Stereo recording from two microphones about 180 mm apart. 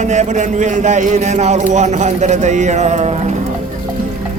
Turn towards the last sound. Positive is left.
turn(degrees=-40)  # may be behind; listen again after turning